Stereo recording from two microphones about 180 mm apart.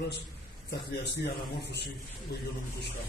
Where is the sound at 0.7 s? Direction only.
65° left (ahead or behind).